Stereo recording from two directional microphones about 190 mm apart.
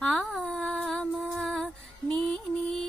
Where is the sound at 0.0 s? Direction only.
5° left (ahead or behind).